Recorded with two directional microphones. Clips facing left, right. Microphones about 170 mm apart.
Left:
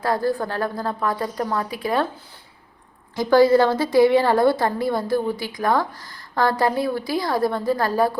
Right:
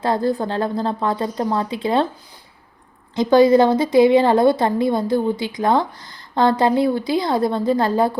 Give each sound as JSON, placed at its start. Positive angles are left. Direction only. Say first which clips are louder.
{"t": 0.0, "sound": "a woman's voice", "louder": "right 2 dB", "side_deg": -20}
{"t": 3.2, "sound": "a woman's voice", "louder": "right 2 dB", "side_deg": -20}